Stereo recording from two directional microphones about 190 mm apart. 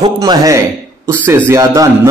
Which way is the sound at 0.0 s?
20° right (ahead or behind).